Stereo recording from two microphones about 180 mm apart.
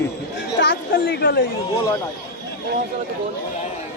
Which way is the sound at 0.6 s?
70° left (ahead or behind).